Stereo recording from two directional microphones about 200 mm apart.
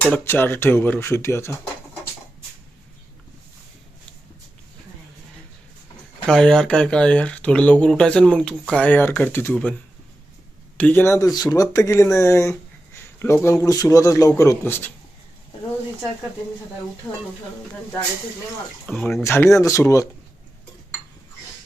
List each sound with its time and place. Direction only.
0.1 s speech: 10° left (ahead or behind)
6.2 s speech: 5° left (ahead or behind)
10.8 s speech: 10° left (ahead or behind)
18.9 s speech: 5° left (ahead or behind)